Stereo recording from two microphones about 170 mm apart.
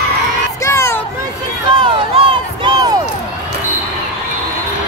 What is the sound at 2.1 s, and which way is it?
Crowd, 25° right (ahead or behind).